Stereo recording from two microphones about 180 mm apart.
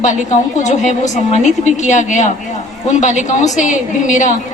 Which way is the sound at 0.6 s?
40° left (ahead or behind).